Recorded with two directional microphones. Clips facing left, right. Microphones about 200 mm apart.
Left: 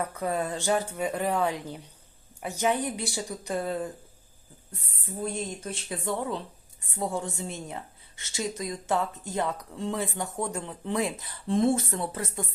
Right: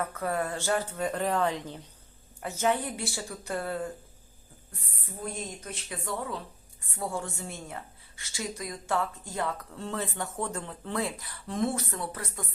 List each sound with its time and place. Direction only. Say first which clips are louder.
0.0 s speech: left 1 dB; 20° left (ahead or behind)
5.5 s a woman's voice: left 4 dB; 30° left (ahead or behind)